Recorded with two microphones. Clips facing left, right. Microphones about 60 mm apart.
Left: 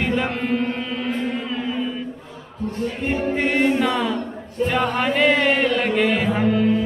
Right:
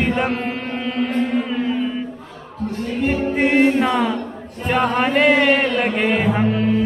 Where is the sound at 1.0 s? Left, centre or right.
Centre.